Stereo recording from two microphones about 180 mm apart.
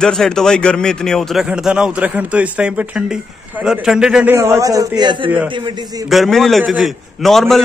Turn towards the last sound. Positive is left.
turn(degrees=0)  # may be behind; listen again after turning